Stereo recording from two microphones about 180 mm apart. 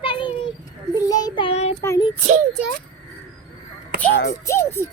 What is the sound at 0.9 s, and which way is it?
Child singing, 20° left (ahead or behind).